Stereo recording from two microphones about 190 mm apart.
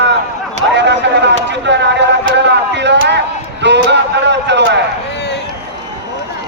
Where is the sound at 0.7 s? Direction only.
65° right (ahead or behind).